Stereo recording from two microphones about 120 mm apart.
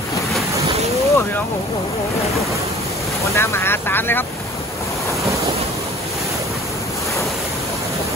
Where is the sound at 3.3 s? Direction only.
20° left (ahead or behind).